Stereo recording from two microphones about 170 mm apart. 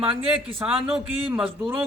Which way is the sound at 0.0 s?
30° right (ahead or behind).